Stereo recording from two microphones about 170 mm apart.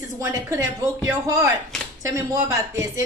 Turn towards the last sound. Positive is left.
turn(degrees=-20)  # may be behind; listen again after turning